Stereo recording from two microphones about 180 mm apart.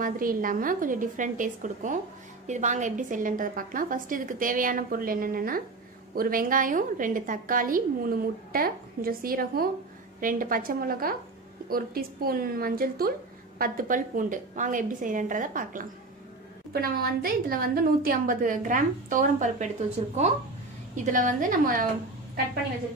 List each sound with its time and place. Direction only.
0.0 s a woman's voice: 50° right (ahead or behind)